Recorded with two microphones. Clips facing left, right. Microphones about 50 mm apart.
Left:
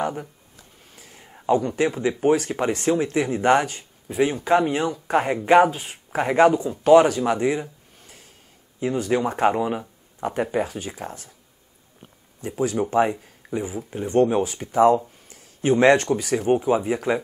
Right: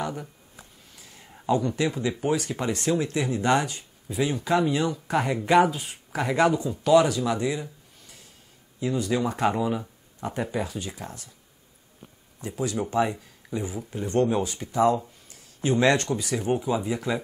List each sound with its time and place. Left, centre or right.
0.0 s speech: left
0.9 s a sound: left
1.5 s speech: left
12.4 s speech: left
13.2 s a sound: left
13.7 s speech: left